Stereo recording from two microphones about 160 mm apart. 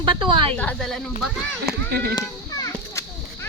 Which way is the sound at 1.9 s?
80° right.